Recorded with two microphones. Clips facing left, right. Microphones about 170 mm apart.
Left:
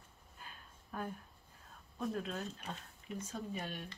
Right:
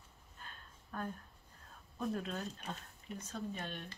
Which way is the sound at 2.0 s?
Centre (ahead or behind).